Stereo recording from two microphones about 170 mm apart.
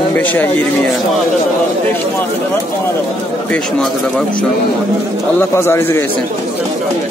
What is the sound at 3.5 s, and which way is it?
Speech, 5° left (ahead or behind).